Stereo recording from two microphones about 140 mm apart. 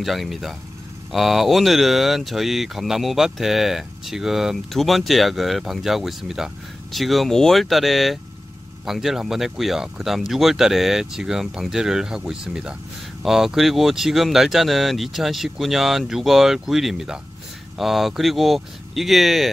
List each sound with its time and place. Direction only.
0.0 s speech: centre (ahead or behind)